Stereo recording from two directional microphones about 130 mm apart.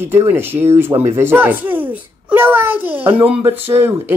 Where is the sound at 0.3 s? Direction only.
15° right (ahead or behind).